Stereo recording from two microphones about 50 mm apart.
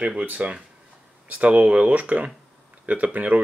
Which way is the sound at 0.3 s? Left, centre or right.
Right.